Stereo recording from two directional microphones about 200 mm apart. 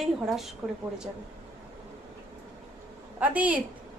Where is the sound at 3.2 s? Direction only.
5° right (ahead or behind).